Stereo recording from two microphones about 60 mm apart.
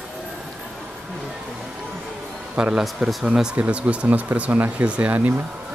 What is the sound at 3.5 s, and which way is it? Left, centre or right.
Speech, right.